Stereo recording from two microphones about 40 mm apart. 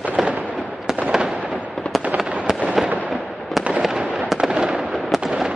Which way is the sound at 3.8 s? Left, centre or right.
Centre.